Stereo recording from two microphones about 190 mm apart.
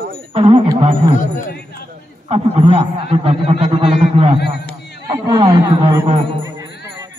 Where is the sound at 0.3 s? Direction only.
30° right (ahead or behind).